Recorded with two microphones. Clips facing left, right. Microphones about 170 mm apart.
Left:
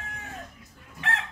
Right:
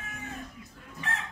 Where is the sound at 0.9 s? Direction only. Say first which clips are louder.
Left 4 dB; 70° left (ahead or behind).